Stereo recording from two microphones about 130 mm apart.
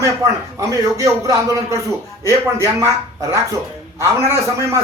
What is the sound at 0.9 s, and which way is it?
A man's voice, 25° right (ahead or behind).